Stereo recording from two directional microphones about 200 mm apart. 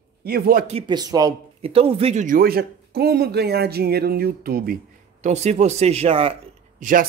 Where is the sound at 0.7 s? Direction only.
25° right (ahead or behind); by 4.7 s 50° right (ahead or behind).